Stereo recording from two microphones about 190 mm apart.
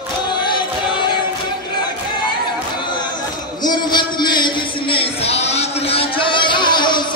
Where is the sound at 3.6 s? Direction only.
20° left (ahead or behind).